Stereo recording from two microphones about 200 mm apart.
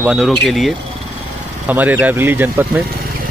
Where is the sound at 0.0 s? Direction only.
5° right (ahead or behind).